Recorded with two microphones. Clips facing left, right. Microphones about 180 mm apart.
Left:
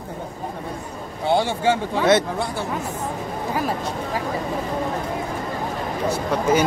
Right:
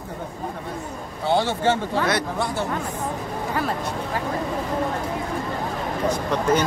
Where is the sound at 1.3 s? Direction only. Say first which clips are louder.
Left 1 dB; 10° left (ahead or behind).